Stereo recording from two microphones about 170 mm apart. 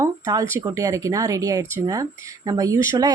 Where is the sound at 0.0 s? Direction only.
20° right (ahead or behind).